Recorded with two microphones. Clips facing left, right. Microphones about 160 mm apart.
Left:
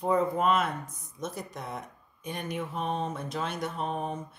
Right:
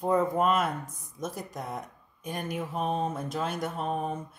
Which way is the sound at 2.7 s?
45° right (ahead or behind).